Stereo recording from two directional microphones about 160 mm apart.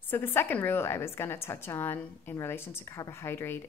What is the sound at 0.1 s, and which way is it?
A woman's voice, 15° left (ahead or behind).